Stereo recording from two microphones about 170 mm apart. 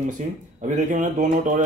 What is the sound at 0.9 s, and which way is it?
Speech, 45° right (ahead or behind).